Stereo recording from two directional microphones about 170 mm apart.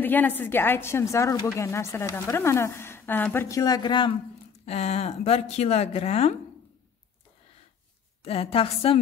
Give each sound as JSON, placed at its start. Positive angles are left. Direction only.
{"t": 0.0, "sound": "a woman's voice", "side_deg": 10}
{"t": 4.5, "sound": "speech", "side_deg": 40}
{"t": 8.2, "sound": "speech", "side_deg": 35}